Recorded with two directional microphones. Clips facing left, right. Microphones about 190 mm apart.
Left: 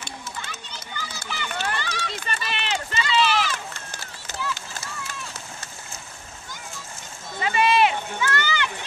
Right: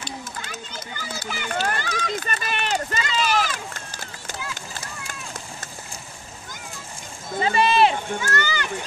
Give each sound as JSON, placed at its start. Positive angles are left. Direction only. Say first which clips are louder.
{"t": 0.5, "sound": "run", "louder": "right 3 dB", "side_deg": -50}
{"t": 7.3, "sound": "run", "louder": "right 2 dB", "side_deg": -35}